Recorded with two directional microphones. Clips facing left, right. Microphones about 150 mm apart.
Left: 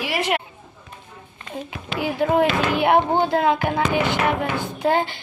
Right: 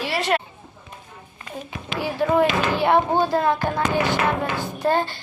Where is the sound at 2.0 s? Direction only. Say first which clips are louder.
Even; 20° left (ahead or behind).